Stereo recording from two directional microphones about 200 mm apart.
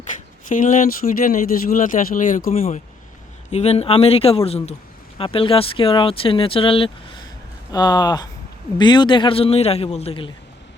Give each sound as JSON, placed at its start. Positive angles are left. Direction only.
{"t": 0.4, "sound": "speech", "side_deg": 40}